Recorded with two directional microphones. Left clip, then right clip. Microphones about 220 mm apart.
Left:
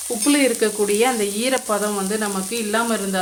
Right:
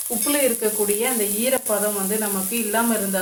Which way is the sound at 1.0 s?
55° left (ahead or behind).